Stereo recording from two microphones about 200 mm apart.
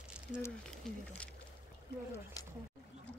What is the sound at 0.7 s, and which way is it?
Speech, 5° left (ahead or behind).